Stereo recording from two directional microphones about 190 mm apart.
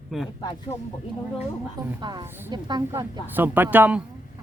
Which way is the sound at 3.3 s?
10° right (ahead or behind).